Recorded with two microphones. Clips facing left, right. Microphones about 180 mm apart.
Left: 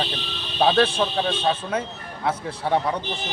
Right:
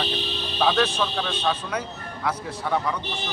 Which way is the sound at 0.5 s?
30° left (ahead or behind).